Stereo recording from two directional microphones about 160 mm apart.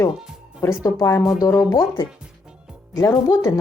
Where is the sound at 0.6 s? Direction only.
20° left (ahead or behind).